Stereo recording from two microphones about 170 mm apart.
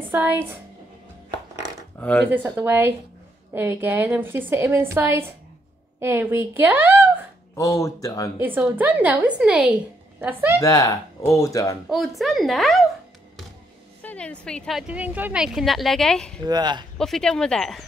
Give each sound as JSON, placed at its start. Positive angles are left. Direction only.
{"t": 0.1, "sound": "a woman's voice", "side_deg": -10}
{"t": 2.0, "sound": "speech", "side_deg": 10}
{"t": 2.2, "sound": "a woman's voice", "side_deg": -10}
{"t": 7.5, "sound": "speech", "side_deg": 20}
{"t": 8.4, "sound": "a woman's voice", "side_deg": -10}
{"t": 10.6, "sound": "speech", "side_deg": 20}
{"t": 11.9, "sound": "speech", "side_deg": 0}
{"t": 14.0, "sound": "speech", "side_deg": 5}
{"t": 16.4, "sound": "speech", "side_deg": -25}
{"t": 17.0, "sound": "speech", "side_deg": 5}